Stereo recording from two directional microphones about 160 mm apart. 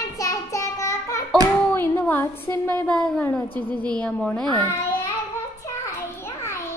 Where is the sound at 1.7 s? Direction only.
15° left (ahead or behind).